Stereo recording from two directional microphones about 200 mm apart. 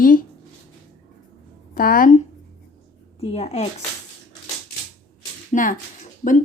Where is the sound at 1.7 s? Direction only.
45° left (ahead or behind).